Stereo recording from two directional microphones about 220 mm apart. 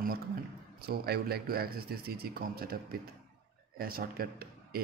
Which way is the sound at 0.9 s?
45° right (ahead or behind).